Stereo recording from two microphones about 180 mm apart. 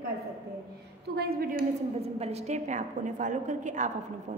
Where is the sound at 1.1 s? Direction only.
55° right (ahead or behind).